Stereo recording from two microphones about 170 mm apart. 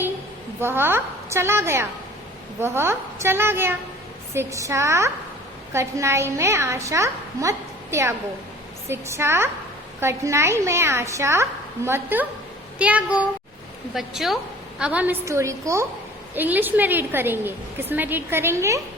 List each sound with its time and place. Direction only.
0.6 s a woman's voice: 15° right (ahead or behind)